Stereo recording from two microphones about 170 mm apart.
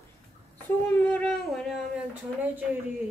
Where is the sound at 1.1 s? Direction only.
5° left (ahead or behind).